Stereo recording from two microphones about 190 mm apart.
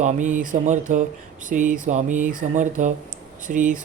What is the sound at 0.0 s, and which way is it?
Speech, 40° right (ahead or behind).